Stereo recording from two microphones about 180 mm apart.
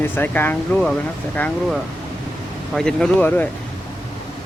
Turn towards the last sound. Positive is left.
turn(degrees=10)  # may be behind; listen again after turning